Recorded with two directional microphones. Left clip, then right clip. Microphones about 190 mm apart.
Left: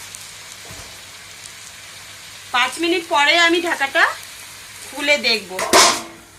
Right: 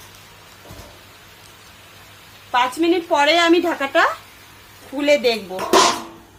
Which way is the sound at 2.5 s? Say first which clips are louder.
Right 1 dB; 55° right (ahead or behind).